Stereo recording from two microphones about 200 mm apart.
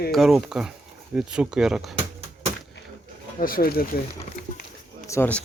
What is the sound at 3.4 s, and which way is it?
Speech, 45° left (ahead or behind).